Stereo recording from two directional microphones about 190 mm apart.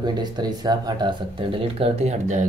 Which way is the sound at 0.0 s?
20° right (ahead or behind).